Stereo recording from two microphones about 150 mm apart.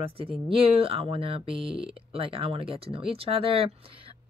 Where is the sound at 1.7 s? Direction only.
5° right (ahead or behind).